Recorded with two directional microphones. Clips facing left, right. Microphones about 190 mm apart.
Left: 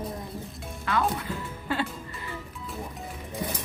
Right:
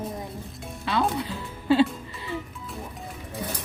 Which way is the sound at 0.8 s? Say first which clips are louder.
Right 2 dB; 25° right (ahead or behind).